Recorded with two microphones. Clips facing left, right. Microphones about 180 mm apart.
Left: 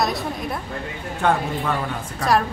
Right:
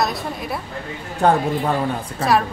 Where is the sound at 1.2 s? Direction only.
35° right (ahead or behind).